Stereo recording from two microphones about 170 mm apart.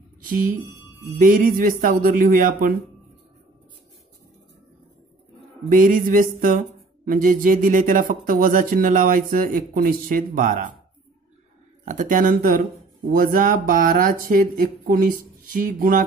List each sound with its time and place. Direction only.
1.1 s speech: 55° right (ahead or behind)
5.7 s speech: 50° right (ahead or behind)
11.8 s speech: 45° right (ahead or behind)